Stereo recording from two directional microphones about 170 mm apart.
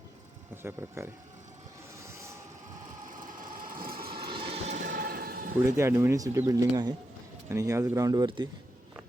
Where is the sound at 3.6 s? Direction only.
55° right (ahead or behind).